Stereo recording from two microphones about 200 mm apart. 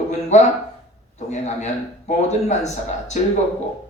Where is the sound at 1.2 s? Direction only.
35° left (ahead or behind).